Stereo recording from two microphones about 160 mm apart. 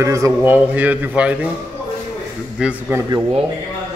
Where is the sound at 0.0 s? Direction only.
20° right (ahead or behind).